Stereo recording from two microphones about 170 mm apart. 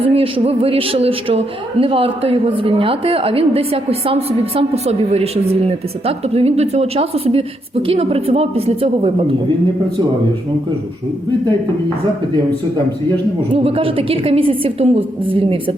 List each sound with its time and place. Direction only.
0.0 s a woman's voice: 30° right (ahead or behind)
13.5 s a woman's voice: 35° right (ahead or behind)